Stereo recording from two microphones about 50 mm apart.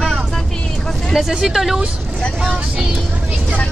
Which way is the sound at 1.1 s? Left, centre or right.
Centre.